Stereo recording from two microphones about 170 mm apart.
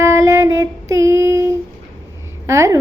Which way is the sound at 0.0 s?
15° right (ahead or behind).